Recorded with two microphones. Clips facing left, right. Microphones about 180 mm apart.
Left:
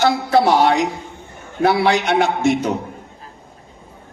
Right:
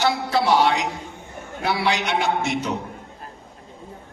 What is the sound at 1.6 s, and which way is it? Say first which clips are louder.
A man's voice: left 7 dB; 50° left (ahead or behind).